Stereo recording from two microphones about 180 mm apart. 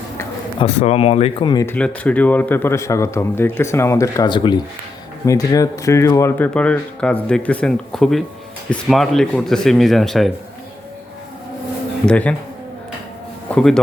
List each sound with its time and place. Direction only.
0.6 s speech: 35° left (ahead or behind)
1.6 s speech: 5° left (ahead or behind)
12.0 s speech: 5° left (ahead or behind)
13.5 s speech: 5° left (ahead or behind)